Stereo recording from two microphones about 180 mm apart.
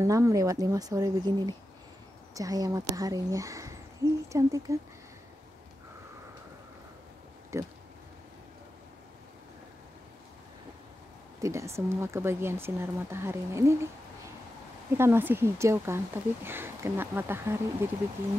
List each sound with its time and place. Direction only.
0.0 s speech: 20° right (ahead or behind)
7.5 s speech: 15° right (ahead or behind)
11.4 s speech: 15° right (ahead or behind)
15.0 s speech: 10° right (ahead or behind)